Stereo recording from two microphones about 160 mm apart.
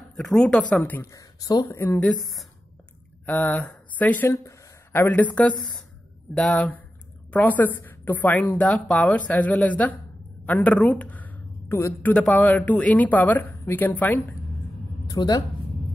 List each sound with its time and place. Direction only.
0.1 s a woman's voice: centre (ahead or behind); by 1.8 s 25° left (ahead or behind)
1.8 s a woman's voice: 15° left (ahead or behind)
3.3 s a woman's voice: 10° left (ahead or behind)
15.0 s speech: 25° left (ahead or behind)